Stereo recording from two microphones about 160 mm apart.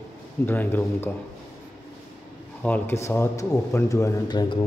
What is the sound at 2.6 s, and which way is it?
Speech, 10° left (ahead or behind).